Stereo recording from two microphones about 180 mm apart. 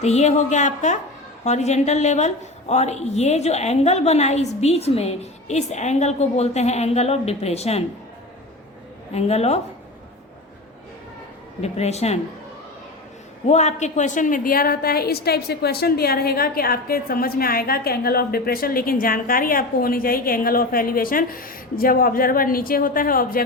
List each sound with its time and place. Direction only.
0.0 s a woman's voice: 40° left (ahead or behind)
9.1 s a woman's voice: 35° left (ahead or behind)
11.6 s a woman's voice: 35° left (ahead or behind)
13.5 s a woman's voice: 40° left (ahead or behind)